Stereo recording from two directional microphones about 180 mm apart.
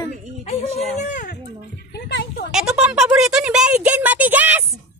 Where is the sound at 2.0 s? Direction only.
75° left (ahead or behind).